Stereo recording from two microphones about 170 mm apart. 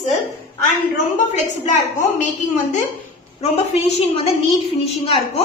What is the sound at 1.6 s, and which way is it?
Speech, 45° left (ahead or behind).